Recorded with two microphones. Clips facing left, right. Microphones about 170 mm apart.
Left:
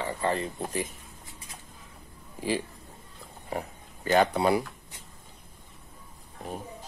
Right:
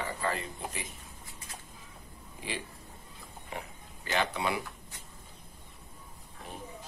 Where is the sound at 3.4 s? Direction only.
40° left (ahead or behind).